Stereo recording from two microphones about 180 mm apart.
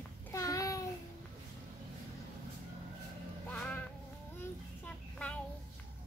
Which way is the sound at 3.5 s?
5° left (ahead or behind).